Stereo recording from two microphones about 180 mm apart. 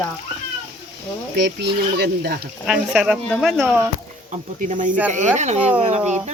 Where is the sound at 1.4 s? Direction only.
70° right (ahead or behind).